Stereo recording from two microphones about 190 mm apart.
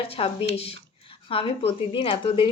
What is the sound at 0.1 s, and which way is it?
Speech, 30° left (ahead or behind).